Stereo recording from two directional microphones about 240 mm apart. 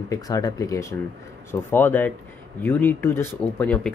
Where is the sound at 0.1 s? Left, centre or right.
Centre.